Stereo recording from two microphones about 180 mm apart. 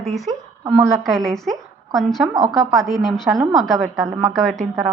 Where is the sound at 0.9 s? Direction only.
Centre (ahead or behind).